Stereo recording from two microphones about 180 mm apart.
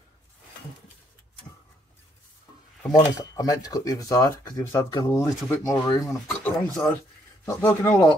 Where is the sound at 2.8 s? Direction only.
20° left (ahead or behind).